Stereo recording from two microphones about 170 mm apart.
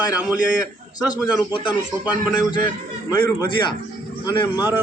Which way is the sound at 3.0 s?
25° left (ahead or behind).